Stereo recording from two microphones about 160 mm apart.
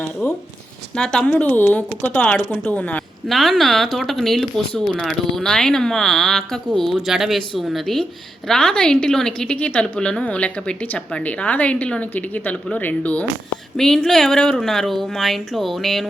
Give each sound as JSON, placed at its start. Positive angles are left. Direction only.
{"t": 0.0, "sound": "a woman's voice", "side_deg": 5}